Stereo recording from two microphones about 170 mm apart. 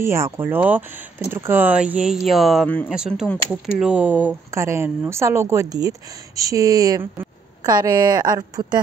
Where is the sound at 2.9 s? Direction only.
5° right (ahead or behind).